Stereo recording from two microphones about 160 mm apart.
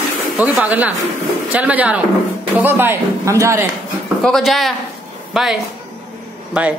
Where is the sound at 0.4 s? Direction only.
10° right (ahead or behind).